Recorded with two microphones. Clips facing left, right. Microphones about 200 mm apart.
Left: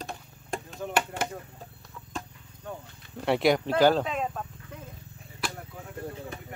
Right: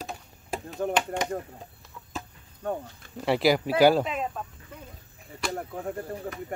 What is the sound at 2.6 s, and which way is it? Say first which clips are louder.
Speech: right 9 dB; 60° right (ahead or behind).